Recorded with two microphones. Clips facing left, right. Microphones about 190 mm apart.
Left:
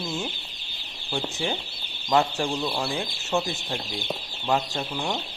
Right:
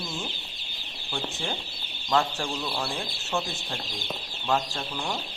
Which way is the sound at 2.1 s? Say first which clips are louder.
Left 3 dB; 15° left (ahead or behind).